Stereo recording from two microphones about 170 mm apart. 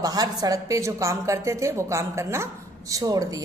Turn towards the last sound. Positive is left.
turn(degrees=-20)  # may be behind; listen again after turning